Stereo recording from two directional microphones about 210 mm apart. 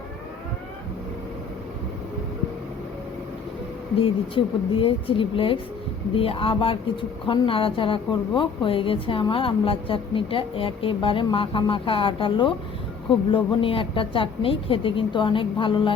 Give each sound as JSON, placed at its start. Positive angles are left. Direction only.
{"t": 4.0, "sound": "speech", "side_deg": 25}